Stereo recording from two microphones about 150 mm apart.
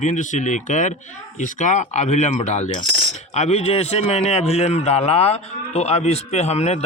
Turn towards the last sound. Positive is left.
turn(degrees=45)  # may be behind; listen again after turning